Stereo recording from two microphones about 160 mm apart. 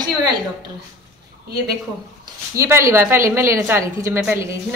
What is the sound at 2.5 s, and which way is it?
A woman's voice, 20° right (ahead or behind).